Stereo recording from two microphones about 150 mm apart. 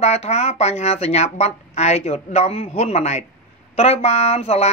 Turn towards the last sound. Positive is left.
turn(degrees=45)  # may be behind; listen again after turning